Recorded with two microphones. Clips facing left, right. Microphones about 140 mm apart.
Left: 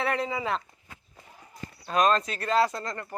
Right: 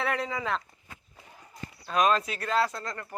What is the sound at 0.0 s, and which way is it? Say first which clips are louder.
Speech: left 2 dB; centre (ahead or behind).